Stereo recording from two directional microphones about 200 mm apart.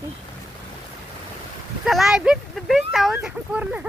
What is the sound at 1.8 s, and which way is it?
Speech, centre (ahead or behind).